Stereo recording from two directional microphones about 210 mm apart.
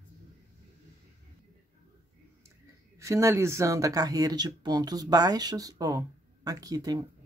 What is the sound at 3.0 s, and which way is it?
Speech, 15° right (ahead or behind).